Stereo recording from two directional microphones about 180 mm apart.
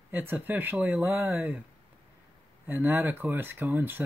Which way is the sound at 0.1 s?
10° right (ahead or behind).